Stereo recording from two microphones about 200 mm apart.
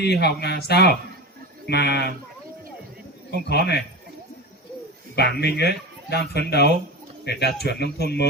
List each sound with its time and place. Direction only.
0.0 s speech: 55° left (ahead or behind)
3.5 s speech: 55° left (ahead or behind)
5.1 s speech: 55° left (ahead or behind)